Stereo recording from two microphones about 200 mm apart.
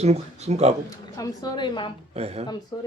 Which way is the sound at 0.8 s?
20° left (ahead or behind).